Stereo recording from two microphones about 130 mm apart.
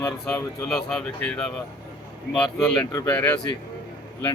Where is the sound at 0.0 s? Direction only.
15° left (ahead or behind).